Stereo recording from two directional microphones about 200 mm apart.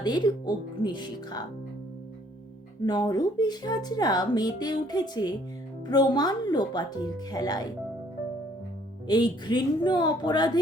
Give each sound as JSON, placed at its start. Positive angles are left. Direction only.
{"t": 0.0, "sound": "speech", "side_deg": 20}
{"t": 2.8, "sound": "speech", "side_deg": 20}
{"t": 9.0, "sound": "speech", "side_deg": 20}